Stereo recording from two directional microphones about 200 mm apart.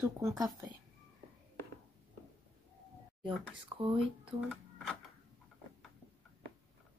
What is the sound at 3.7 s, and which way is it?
Speech, 20° right (ahead or behind).